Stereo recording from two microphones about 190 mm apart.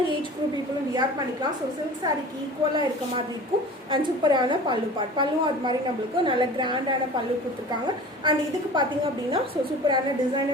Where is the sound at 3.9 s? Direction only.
25° right (ahead or behind).